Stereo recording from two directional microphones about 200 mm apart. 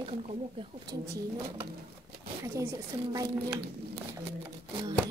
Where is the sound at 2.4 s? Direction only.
15° right (ahead or behind).